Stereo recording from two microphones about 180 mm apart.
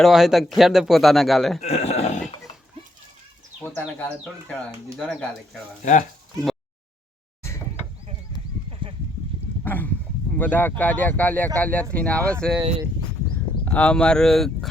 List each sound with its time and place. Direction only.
0.0 s speech: centre (ahead or behind)
1.6 s speech: 35° left (ahead or behind)
3.7 s speech: 5° left (ahead or behind)
5.8 s speech: 40° left (ahead or behind)
8.8 s clip-clop: 30° right (ahead or behind)
9.6 s speech: 10° left (ahead or behind)
13.7 s speech: 5° left (ahead or behind)